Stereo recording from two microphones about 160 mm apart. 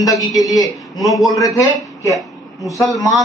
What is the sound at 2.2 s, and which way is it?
Speech, centre (ahead or behind).